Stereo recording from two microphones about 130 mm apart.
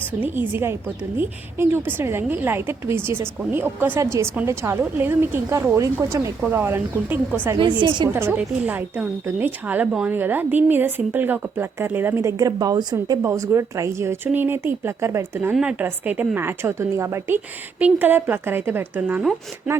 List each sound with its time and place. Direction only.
0.2 s a woman's voice: 15° right (ahead or behind)
7.6 s a woman's voice: 35° right (ahead or behind)
8.1 s a woman's voice: 15° right (ahead or behind)